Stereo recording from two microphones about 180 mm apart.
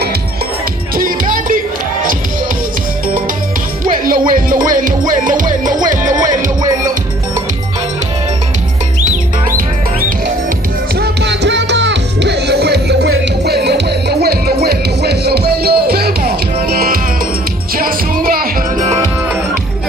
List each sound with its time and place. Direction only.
0.9 s music: 50° right (ahead or behind)
3.8 s music: 50° right (ahead or behind)
11.0 s music: 75° right (ahead or behind); by 18.9 s 55° right (ahead or behind)